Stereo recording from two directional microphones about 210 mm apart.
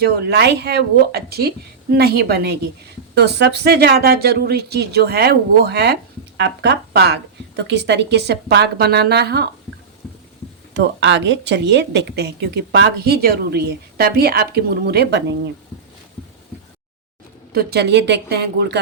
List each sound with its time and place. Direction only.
0.0 s speech: 55° right (ahead or behind)
10.8 s a woman's voice: 60° right (ahead or behind)
17.5 s speech: 50° right (ahead or behind)